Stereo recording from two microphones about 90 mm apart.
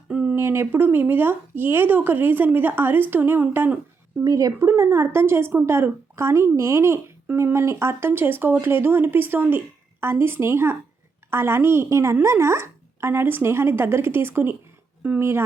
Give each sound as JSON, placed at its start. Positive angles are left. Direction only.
{"t": 0.1, "sound": "a sound", "side_deg": -15}
{"t": 0.3, "sound": "a woman's voice", "side_deg": -30}
{"t": 4.2, "sound": "speech", "side_deg": -40}
{"t": 4.6, "sound": "a woman's voice", "side_deg": -30}